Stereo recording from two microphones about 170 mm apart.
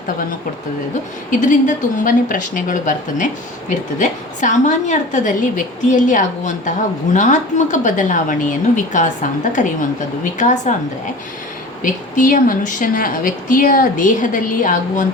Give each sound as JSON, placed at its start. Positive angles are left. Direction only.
{"t": 1.3, "sound": "a woman's voice", "side_deg": 50}
{"t": 11.8, "sound": "a woman's voice", "side_deg": 50}